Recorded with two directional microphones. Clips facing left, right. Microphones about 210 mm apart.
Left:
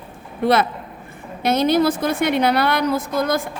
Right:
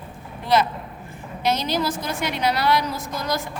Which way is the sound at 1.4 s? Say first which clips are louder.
Left 7 dB; 55° left (ahead or behind).